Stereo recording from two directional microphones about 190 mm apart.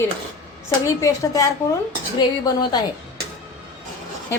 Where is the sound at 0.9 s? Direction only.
15° left (ahead or behind).